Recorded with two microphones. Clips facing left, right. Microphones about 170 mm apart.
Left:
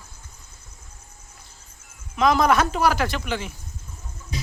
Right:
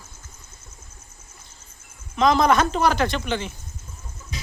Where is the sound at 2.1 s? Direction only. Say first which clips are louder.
Right 1 dB; 5° left (ahead or behind).